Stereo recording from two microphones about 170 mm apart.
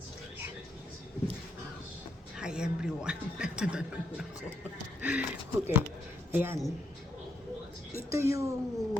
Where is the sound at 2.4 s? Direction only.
5° right (ahead or behind).